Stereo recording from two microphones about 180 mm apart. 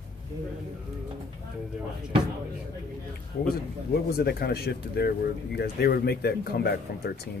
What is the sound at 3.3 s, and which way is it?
Speech, 55° left (ahead or behind).